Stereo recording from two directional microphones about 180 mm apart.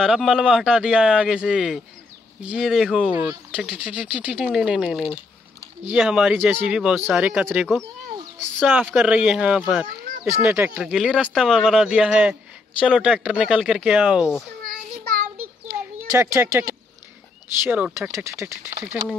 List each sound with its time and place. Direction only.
0.0 s speech: centre (ahead or behind)
14.6 s child singing: 50° right (ahead or behind)
16.1 s speech: 15° right (ahead or behind)